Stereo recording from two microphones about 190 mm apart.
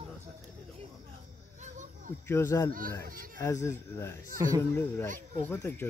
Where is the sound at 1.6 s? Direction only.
40° right (ahead or behind).